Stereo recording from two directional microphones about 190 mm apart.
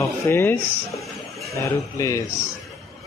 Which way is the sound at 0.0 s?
15° left (ahead or behind).